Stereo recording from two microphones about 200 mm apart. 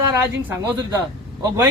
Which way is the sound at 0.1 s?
10° right (ahead or behind).